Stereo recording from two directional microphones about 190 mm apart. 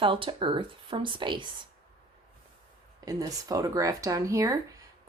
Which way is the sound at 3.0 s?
20° right (ahead or behind).